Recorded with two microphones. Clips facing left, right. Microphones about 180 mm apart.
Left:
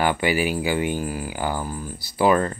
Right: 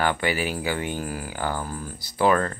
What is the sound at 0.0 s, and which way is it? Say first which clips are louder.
Speech: left 3 dB; 10° left (ahead or behind).